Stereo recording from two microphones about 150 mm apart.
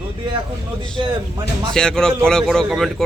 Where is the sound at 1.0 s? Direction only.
35° right (ahead or behind).